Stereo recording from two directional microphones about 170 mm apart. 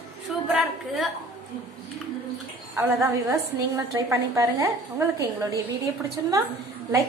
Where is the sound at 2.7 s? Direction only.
20° right (ahead or behind).